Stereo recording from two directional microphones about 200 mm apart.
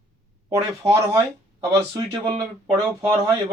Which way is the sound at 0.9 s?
15° right (ahead or behind).